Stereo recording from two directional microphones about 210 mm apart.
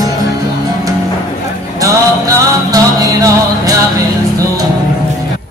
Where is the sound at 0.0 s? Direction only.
15° right (ahead or behind).